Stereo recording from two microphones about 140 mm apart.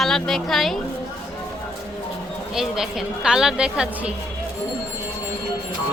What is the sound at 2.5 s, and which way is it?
Speech, 5° right (ahead or behind).